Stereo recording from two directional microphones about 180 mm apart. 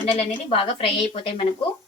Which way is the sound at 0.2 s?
30° left (ahead or behind).